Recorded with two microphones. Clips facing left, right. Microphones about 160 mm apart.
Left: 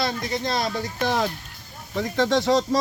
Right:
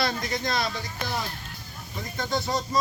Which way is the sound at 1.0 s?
90° left.